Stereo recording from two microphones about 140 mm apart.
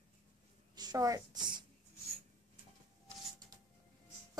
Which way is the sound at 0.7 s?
25° right (ahead or behind).